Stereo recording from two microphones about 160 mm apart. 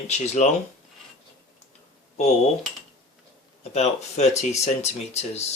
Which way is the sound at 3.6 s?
45° left (ahead or behind).